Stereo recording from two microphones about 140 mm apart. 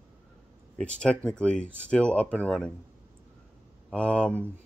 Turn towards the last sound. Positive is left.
turn(degrees=10)  # may be behind; listen again after turning